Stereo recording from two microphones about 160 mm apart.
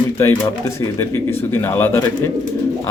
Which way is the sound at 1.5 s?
15° left (ahead or behind).